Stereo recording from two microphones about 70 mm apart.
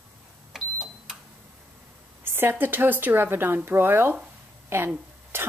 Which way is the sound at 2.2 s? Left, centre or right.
Right.